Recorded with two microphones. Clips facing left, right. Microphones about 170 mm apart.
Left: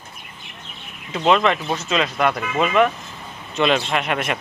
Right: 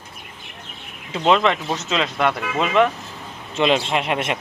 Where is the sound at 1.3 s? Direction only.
5° left (ahead or behind).